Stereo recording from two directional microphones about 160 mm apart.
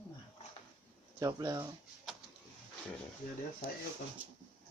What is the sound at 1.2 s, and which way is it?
Speech, 20° right (ahead or behind).